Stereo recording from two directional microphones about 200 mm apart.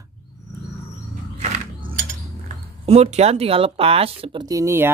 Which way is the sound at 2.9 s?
30° right (ahead or behind).